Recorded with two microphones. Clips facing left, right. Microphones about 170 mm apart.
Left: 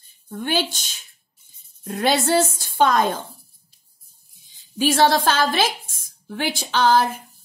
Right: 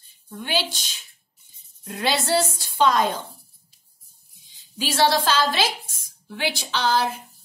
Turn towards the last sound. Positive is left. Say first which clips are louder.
# left 5 dB
turn(degrees=50)  # may be behind; listen again after turning